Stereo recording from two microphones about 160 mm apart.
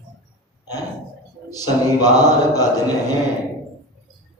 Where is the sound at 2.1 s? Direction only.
25° left (ahead or behind).